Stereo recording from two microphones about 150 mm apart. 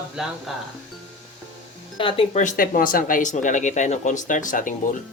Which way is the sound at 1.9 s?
35° left (ahead or behind).